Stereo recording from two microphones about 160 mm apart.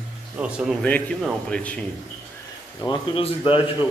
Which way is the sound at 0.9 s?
10° left (ahead or behind).